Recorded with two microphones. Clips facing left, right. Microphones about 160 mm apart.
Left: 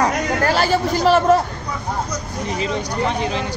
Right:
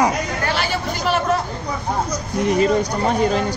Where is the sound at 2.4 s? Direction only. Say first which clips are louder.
Right 7 dB; 50° right (ahead or behind).